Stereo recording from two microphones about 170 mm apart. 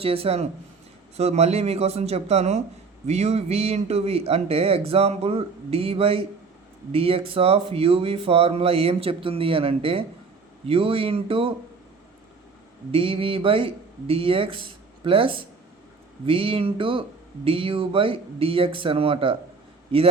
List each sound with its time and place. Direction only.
0.0 s speech: 35° right (ahead or behind)
12.9 s speech: 35° right (ahead or behind)